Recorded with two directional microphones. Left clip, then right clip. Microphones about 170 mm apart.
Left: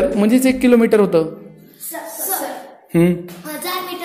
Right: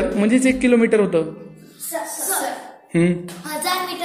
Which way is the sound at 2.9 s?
25° left (ahead or behind).